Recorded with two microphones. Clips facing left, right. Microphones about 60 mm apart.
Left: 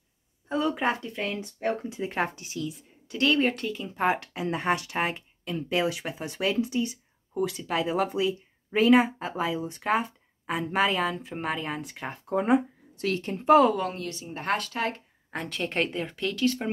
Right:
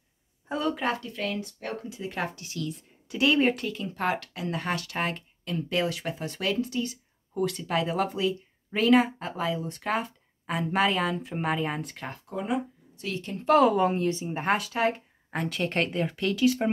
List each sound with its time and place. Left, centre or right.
0.5 s speech: centre
0.7 s speech: left
3.1 s a woman's voice: centre
4.0 s speech: centre
7.3 s a woman's voice: centre
11.9 s speech: centre
12.3 s speech: left
12.9 s a woman's voice: left
13.5 s a woman's voice: centre
13.7 s a woman's voice: right
14.4 s a woman's voice: centre